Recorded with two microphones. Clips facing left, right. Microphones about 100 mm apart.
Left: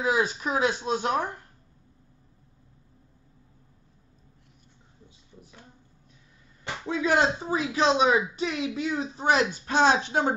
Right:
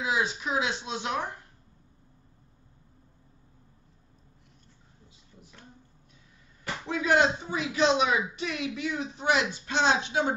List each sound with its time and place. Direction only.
0.0 s speech: 45° left (ahead or behind)
6.6 s speech: 25° left (ahead or behind); by 10.0 s 45° left (ahead or behind)